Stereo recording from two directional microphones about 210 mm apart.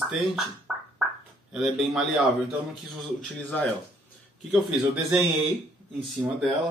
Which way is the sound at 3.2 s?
5° left (ahead or behind).